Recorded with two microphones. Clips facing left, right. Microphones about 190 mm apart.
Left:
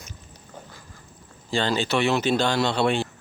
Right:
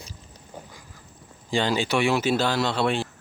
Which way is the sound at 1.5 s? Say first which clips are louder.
Even; 15° right (ahead or behind).